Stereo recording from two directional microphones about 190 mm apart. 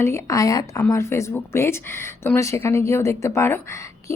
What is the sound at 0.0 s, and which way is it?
Speech, 15° left (ahead or behind).